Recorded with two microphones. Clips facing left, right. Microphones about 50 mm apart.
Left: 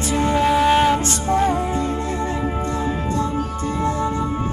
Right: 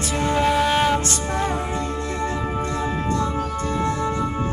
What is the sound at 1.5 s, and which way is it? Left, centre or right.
Music, right.